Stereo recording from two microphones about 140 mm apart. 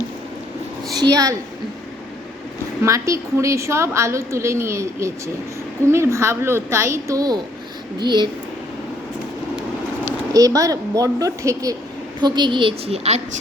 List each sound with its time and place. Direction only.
0.9 s a woman's voice: 25° right (ahead or behind)
2.8 s a woman's voice: 20° right (ahead or behind)
10.3 s a woman's voice: 25° right (ahead or behind); by 13.2 s 50° right (ahead or behind)